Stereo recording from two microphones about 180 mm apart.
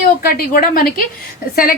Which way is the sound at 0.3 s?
55° left (ahead or behind).